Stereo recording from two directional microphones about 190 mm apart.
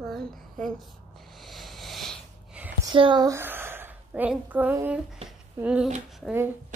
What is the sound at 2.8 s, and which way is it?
A woman's voice, 25° right (ahead or behind).